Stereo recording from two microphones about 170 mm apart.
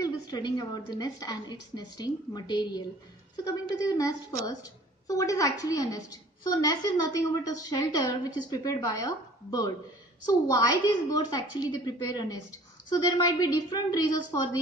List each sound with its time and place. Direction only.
0.0 s a woman's voice: 20° left (ahead or behind)